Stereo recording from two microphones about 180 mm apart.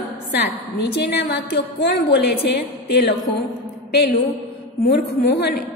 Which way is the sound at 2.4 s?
65° left (ahead or behind).